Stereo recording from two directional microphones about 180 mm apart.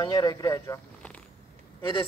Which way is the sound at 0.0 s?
20° left (ahead or behind).